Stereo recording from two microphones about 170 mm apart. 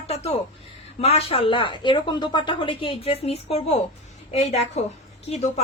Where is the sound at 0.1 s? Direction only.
35° left (ahead or behind).